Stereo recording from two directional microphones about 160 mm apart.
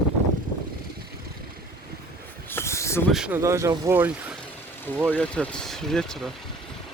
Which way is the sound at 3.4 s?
20° right (ahead or behind).